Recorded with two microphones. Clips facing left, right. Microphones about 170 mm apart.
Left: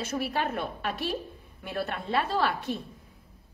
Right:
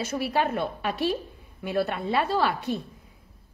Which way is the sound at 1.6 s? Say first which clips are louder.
Right 6 dB; 10° right (ahead or behind).